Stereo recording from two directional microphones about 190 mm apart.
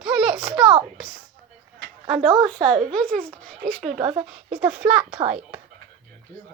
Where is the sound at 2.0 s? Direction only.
30° right (ahead or behind).